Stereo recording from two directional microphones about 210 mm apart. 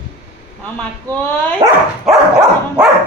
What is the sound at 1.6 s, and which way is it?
Dog, 15° right (ahead or behind).